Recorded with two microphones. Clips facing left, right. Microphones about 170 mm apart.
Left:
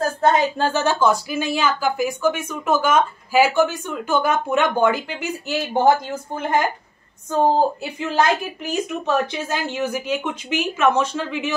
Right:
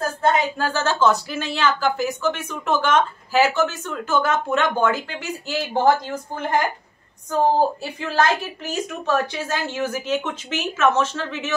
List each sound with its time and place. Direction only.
0.6 s speech: 20° left (ahead or behind)
7.2 s speech: 20° left (ahead or behind)